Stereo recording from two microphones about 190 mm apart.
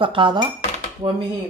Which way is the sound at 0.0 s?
25° right (ahead or behind).